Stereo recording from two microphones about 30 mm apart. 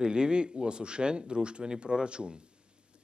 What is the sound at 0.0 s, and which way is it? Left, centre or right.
Speech, right.